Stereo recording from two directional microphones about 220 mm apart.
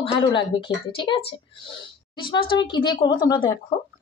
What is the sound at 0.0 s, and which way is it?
Speech, 25° left (ahead or behind).